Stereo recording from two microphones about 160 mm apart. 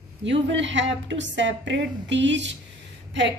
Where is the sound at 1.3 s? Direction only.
90° right.